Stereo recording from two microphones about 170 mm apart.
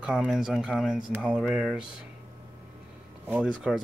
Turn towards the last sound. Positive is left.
turn(degrees=-5)  # may be behind; listen again after turning